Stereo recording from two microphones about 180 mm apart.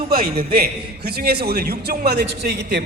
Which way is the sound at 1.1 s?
60° right (ahead or behind).